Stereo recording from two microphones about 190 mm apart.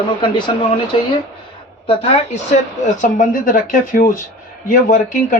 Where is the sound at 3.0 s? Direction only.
45° left (ahead or behind).